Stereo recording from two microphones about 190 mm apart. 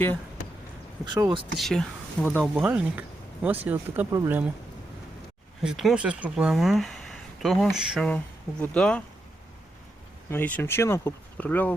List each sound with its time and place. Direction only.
1.0 s speech: 25° right (ahead or behind)
1.5 s speech: centre (ahead or behind)
2.6 s speech: 5° right (ahead or behind)
5.6 s speech: 5° right (ahead or behind)
10.2 s speech: 10° left (ahead or behind)